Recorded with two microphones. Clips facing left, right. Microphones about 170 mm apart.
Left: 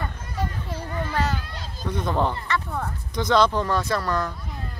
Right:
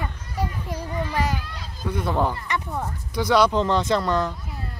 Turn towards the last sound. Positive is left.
turn(degrees=-20)  # may be behind; listen again after turning